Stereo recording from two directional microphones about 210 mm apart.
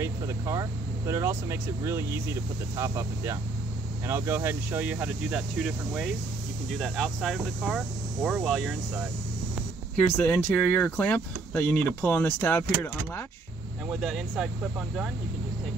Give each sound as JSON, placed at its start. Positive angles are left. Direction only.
{"t": 0.0, "sound": "speech", "side_deg": -15}
{"t": 13.8, "sound": "speech", "side_deg": 0}